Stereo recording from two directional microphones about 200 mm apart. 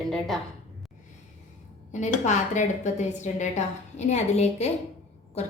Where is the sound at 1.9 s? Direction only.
35° left (ahead or behind).